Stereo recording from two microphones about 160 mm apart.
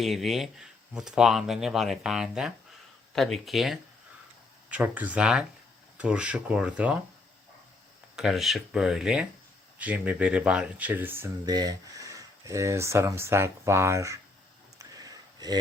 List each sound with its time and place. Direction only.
0.0 s speech: centre (ahead or behind)
8.1 s speech: centre (ahead or behind)
11.4 s speech: 25° right (ahead or behind)
14.8 s a sound: 20° right (ahead or behind)